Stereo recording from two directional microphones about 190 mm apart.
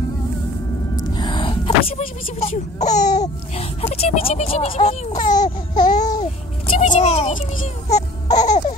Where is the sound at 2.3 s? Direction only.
35° left (ahead or behind).